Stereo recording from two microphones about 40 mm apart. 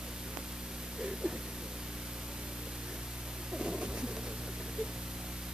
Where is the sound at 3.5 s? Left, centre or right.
Right.